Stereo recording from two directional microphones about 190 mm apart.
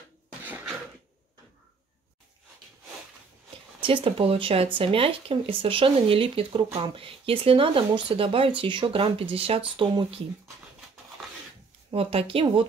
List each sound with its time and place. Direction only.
0.4 s a sound: 10° right (ahead or behind)
3.8 s speech: 25° right (ahead or behind)
11.9 s speech: 30° right (ahead or behind)